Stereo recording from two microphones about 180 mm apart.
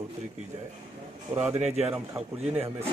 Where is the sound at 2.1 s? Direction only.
5° right (ahead or behind).